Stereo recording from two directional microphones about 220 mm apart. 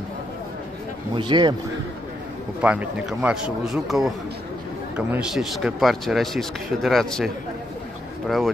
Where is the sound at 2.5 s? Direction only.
5° right (ahead or behind).